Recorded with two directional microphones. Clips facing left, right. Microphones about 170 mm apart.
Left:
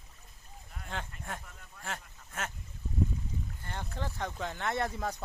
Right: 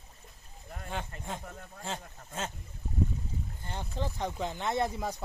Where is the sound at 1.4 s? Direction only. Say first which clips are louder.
Right 9 dB; 45° right (ahead or behind).